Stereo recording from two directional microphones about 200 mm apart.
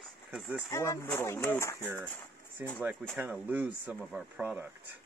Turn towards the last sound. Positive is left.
turn(degrees=-5)  # may be behind; listen again after turning